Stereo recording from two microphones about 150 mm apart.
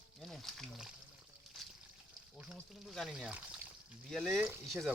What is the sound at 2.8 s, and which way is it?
Speech, centre (ahead or behind).